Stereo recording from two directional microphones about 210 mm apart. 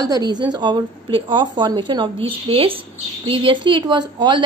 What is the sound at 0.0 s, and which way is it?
A woman's voice, 20° right (ahead or behind).